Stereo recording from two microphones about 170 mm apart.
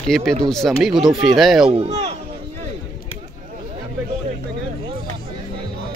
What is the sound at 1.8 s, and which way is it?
Speech, 35° right (ahead or behind).